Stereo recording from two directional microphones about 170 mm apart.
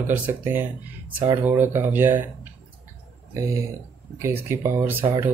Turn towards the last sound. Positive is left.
turn(degrees=-10)  # may be behind; listen again after turning